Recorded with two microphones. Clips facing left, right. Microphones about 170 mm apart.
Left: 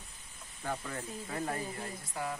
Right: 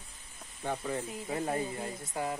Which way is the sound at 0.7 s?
15° right (ahead or behind).